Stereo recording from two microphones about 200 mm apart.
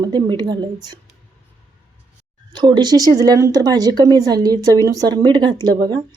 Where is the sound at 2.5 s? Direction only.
20° right (ahead or behind).